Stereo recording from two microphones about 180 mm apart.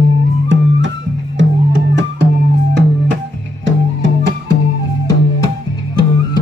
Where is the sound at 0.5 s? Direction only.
90° right.